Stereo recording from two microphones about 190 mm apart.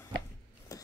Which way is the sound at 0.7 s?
20° left (ahead or behind).